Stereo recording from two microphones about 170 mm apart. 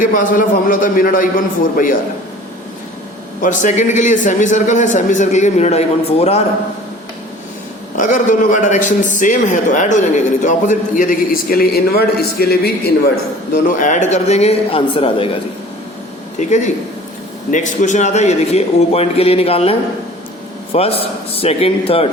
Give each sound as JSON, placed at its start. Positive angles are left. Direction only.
{"t": 0.0, "sound": "a man's voice", "side_deg": 50}
{"t": 3.4, "sound": "a man's voice", "side_deg": 50}
{"t": 7.9, "sound": "a man's voice", "side_deg": 45}
{"t": 13.5, "sound": "a man's voice", "side_deg": 50}
{"t": 16.4, "sound": "a man's voice", "side_deg": 45}
{"t": 20.7, "sound": "a man's voice", "side_deg": 35}